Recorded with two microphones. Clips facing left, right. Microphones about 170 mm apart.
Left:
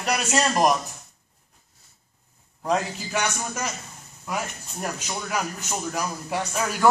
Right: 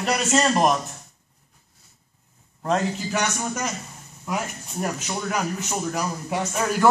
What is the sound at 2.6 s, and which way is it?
A man's voice, centre (ahead or behind).